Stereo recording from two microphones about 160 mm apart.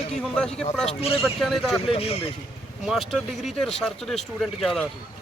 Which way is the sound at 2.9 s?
Centre (ahead or behind).